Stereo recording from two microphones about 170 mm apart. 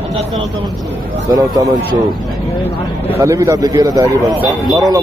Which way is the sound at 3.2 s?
15° right (ahead or behind).